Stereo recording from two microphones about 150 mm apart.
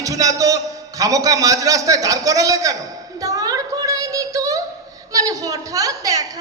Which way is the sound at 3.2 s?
25° right (ahead or behind).